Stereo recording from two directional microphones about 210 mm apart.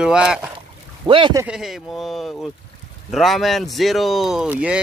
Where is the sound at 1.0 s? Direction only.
25° right (ahead or behind).